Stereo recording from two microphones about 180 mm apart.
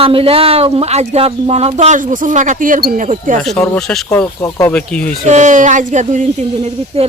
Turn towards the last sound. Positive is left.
turn(degrees=-40)  # may be behind; listen again after turning